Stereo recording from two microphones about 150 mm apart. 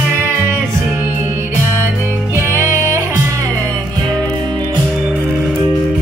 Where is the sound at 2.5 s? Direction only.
20° right (ahead or behind).